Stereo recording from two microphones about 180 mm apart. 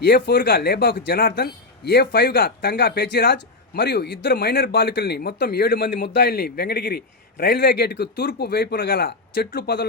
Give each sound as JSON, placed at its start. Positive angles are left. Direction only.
{"t": 0.0, "sound": "speech", "side_deg": 60}